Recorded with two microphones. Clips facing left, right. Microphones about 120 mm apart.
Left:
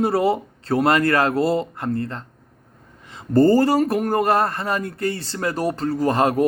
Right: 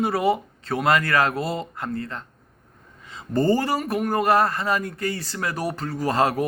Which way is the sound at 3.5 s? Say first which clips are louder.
Left 6 dB; 30° left (ahead or behind).